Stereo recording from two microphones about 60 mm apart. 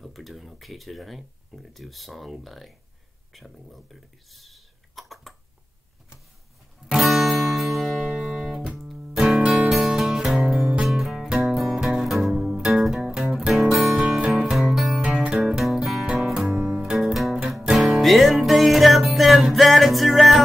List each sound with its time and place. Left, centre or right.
0.0 s speech: centre
6.9 s music: centre
13.9 s music: centre
15.0 s music: centre
15.4 s music: centre
16.9 s music: centre
19.5 s speech: centre